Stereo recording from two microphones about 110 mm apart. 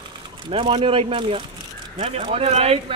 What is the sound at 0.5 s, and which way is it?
Speech, 60° right (ahead or behind).